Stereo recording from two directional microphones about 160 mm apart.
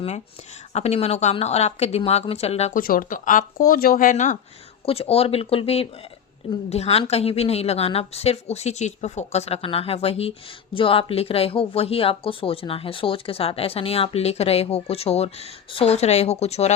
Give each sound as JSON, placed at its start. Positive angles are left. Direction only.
{"t": 0.7, "sound": "speech", "side_deg": 40}
{"t": 2.7, "sound": "speech", "side_deg": 60}
{"t": 4.9, "sound": "speech", "side_deg": 40}